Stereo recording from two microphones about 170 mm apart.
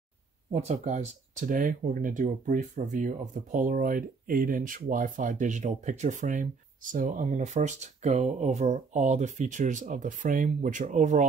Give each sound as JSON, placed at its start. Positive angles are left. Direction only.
{"t": 0.5, "sound": "speech", "side_deg": -40}